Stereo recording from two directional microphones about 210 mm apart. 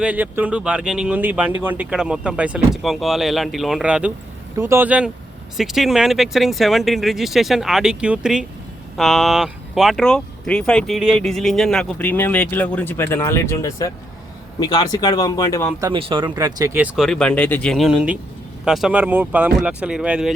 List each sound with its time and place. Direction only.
0.0 s speech: 5° right (ahead or behind); by 15.7 s 15° left (ahead or behind)
15.8 s speech: 25° right (ahead or behind); by 20.3 s 5° right (ahead or behind)